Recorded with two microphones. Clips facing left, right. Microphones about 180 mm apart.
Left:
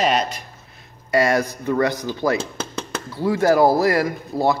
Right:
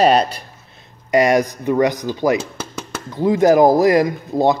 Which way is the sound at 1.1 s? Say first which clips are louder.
Right 4 dB; 15° right (ahead or behind).